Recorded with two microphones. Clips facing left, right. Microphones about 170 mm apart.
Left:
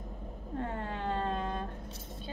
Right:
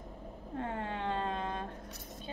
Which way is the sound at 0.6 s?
40° left (ahead or behind).